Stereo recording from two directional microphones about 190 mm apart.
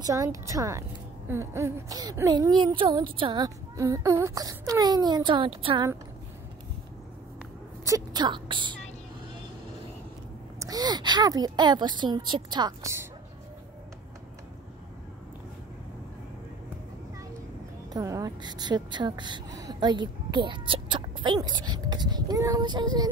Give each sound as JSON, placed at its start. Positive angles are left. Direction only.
{"t": 0.0, "sound": "a woman's voice", "side_deg": -15}
{"t": 7.8, "sound": "a woman's voice", "side_deg": -20}
{"t": 10.6, "sound": "a woman's voice", "side_deg": -20}
{"t": 17.9, "sound": "a woman's voice", "side_deg": -15}